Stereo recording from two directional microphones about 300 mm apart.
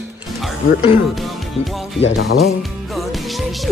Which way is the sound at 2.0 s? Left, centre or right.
Left.